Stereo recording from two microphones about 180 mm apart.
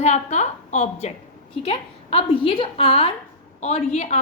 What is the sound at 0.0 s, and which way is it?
A woman's voice, 40° left (ahead or behind).